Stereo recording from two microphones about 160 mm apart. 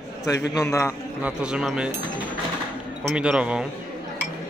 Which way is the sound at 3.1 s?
5° right (ahead or behind).